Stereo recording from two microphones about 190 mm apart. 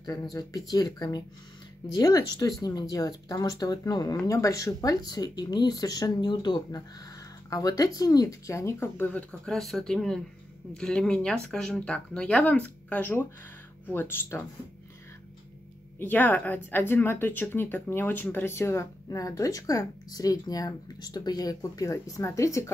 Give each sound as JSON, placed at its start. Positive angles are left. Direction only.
{"t": 0.0, "sound": "speech", "side_deg": 20}
{"t": 16.0, "sound": "speech", "side_deg": 10}